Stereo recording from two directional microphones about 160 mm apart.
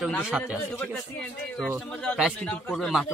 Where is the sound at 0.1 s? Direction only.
5° left (ahead or behind).